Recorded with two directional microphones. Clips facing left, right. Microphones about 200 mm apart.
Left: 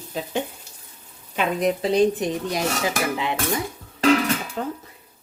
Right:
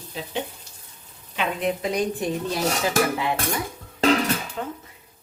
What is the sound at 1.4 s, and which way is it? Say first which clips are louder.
Dishes: left 3 dB; 35° left (ahead or behind).